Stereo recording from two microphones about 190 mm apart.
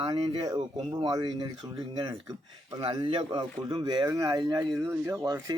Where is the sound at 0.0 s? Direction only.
25° right (ahead or behind).